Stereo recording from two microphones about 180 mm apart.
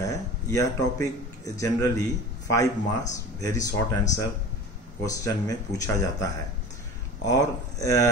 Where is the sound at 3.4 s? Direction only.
20° left (ahead or behind).